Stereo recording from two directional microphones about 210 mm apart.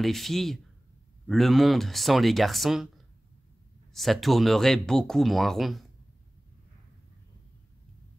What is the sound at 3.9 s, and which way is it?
Speech, centre (ahead or behind).